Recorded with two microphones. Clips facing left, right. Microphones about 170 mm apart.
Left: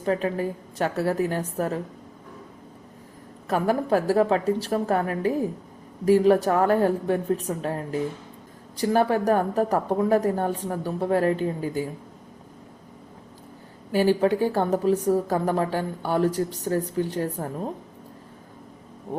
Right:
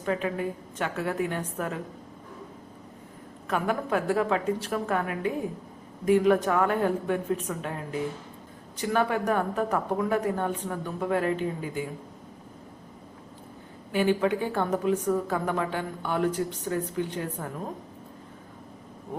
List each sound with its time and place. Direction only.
0.0 s speech: 35° left (ahead or behind)
3.4 s speech: 35° left (ahead or behind)
13.9 s speech: 35° left (ahead or behind)